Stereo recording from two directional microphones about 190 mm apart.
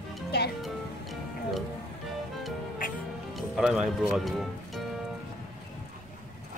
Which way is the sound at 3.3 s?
Centre (ahead or behind).